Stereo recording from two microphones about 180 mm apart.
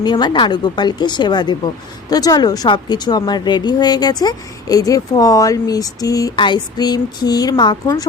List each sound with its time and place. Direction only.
0.0 s speech: 25° left (ahead or behind)